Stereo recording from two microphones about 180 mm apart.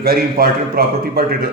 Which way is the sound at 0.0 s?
55° right (ahead or behind).